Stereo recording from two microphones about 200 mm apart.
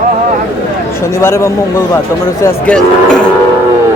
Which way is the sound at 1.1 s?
15° left (ahead or behind).